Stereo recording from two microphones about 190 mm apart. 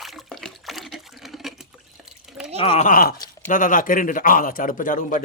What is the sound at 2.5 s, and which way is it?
Speech, 30° left (ahead or behind).